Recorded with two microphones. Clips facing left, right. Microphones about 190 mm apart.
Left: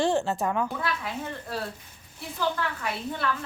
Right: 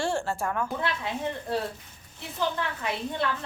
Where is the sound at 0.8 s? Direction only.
25° right (ahead or behind).